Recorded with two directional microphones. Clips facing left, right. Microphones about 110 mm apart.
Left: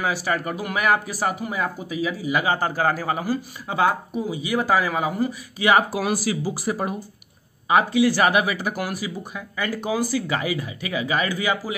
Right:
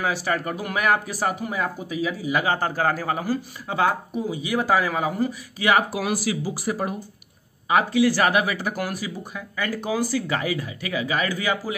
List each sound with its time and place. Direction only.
0.0 s speech: 5° left (ahead or behind)
5.6 s speech: 25° left (ahead or behind)